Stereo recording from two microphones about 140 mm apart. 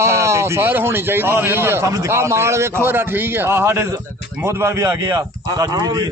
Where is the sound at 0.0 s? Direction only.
20° right (ahead or behind).